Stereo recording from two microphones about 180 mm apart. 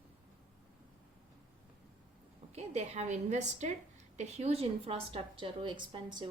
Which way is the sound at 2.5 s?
40° right (ahead or behind).